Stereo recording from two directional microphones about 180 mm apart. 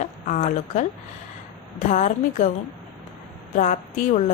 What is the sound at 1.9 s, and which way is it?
Speech, 40° left (ahead or behind).